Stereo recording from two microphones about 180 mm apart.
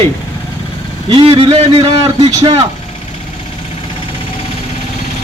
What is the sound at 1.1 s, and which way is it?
A man's voice, 30° right (ahead or behind).